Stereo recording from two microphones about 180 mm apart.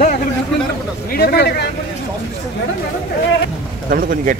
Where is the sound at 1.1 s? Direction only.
60° left (ahead or behind).